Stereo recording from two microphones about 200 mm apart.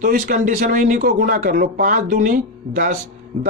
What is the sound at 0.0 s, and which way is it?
Speech, 40° right (ahead or behind).